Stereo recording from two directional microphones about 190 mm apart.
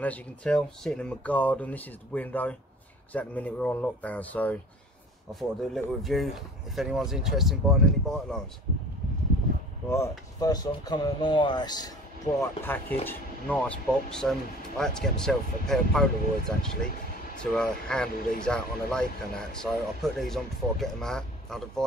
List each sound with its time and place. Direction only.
0.0 s speech: 5° left (ahead or behind)
9.8 s speech: 15° left (ahead or behind)
12.4 s speech: 10° left (ahead or behind)